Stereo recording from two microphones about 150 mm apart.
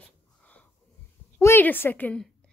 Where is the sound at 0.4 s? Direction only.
10° left (ahead or behind).